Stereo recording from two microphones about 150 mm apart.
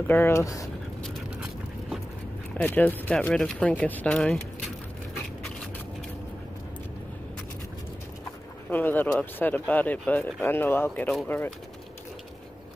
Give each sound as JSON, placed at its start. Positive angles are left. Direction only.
{"t": 0.1, "sound": "speech", "side_deg": 15}
{"t": 1.0, "sound": "vehicle", "side_deg": 0}
{"t": 2.5, "sound": "speech", "side_deg": 10}
{"t": 8.6, "sound": "speech", "side_deg": 10}